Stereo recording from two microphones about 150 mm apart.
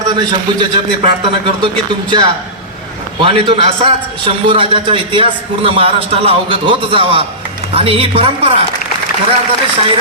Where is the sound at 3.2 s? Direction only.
35° right (ahead or behind).